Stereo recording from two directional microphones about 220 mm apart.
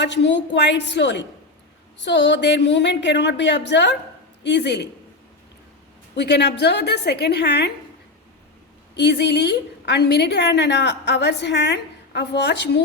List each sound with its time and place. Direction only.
0.0 s a woman's voice: 50° left (ahead or behind)
6.1 s a woman's voice: 50° left (ahead or behind)
9.0 s a woman's voice: 50° left (ahead or behind)